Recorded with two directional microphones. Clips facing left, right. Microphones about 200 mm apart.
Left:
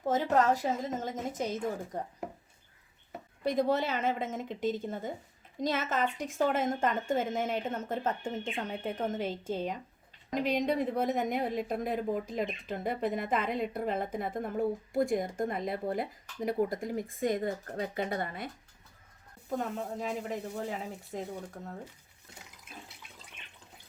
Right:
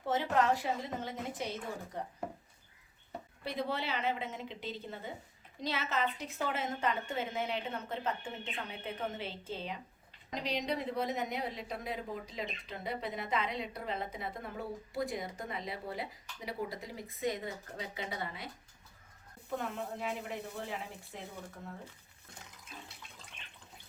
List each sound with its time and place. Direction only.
0.0 s a woman's voice: 45° left (ahead or behind)
3.4 s a woman's voice: 45° left (ahead or behind)
19.5 s a woman's voice: 40° left (ahead or behind)